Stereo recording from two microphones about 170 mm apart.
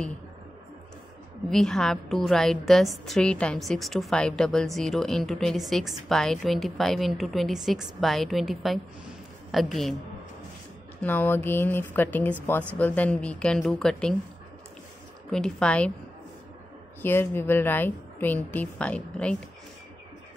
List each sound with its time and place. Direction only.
1.5 s a woman's voice: centre (ahead or behind)
11.0 s a woman's voice: 10° left (ahead or behind)
15.3 s a woman's voice: 5° left (ahead or behind)
17.0 s a woman's voice: 10° left (ahead or behind)